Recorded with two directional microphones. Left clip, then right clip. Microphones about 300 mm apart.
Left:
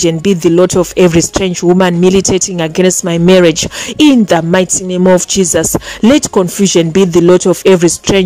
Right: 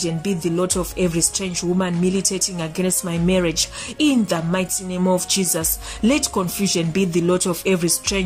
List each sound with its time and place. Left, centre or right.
0.0 s speech: left